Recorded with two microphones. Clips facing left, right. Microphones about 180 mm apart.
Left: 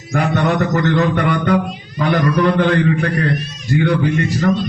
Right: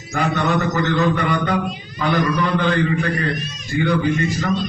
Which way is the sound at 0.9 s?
60° left (ahead or behind).